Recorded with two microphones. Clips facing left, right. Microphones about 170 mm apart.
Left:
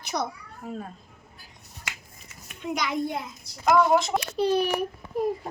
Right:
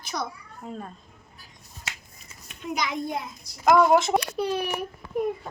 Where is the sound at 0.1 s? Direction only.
30° left (ahead or behind).